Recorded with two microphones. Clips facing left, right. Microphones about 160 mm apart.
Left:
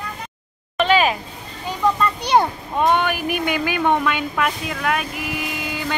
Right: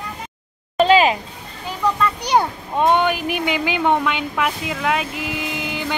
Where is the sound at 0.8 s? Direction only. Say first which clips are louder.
Right 3 dB; 30° right (ahead or behind).